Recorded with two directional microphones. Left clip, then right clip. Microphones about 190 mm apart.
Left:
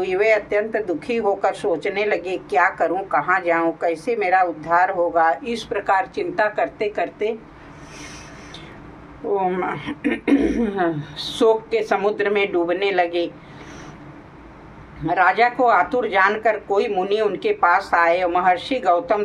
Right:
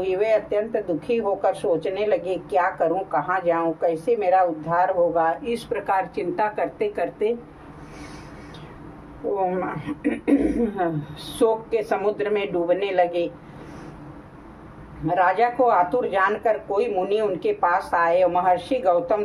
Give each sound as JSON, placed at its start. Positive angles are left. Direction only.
{"t": 0.0, "sound": "a woman's voice", "side_deg": 20}
{"t": 9.4, "sound": "a woman's voice", "side_deg": 20}
{"t": 15.0, "sound": "a woman's voice", "side_deg": 20}